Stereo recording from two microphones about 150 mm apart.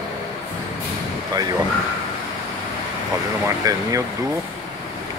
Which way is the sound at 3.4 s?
20° right (ahead or behind).